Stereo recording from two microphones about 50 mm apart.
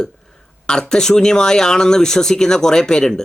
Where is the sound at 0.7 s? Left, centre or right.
Centre.